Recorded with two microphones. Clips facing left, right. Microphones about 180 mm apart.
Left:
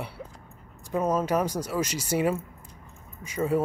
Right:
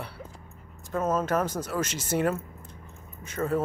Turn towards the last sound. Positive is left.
turn(degrees=5)  # may be behind; listen again after turning